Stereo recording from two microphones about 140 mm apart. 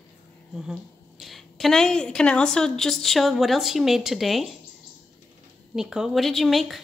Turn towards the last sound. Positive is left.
turn(degrees=0)  # may be behind; listen again after turning